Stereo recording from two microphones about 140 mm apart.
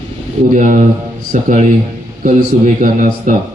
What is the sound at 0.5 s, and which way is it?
A man's voice, 65° right (ahead or behind).